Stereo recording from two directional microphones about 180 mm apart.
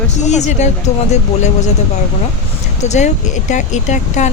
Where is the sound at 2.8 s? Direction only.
40° left (ahead or behind).